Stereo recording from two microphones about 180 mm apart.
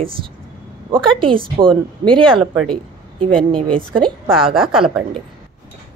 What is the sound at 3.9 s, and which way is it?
Speech, 5° left (ahead or behind).